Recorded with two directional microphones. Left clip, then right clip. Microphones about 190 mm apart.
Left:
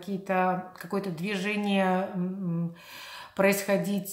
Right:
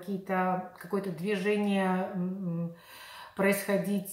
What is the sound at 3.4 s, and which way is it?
Speech, 35° left (ahead or behind).